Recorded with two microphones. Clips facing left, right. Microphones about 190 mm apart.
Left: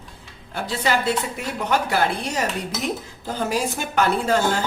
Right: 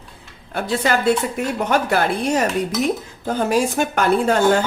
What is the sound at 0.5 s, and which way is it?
Speech, 55° right (ahead or behind).